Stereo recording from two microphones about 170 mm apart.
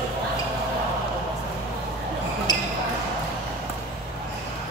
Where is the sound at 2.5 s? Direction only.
25° left (ahead or behind).